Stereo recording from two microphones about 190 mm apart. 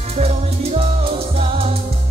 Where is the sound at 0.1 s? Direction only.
35° right (ahead or behind).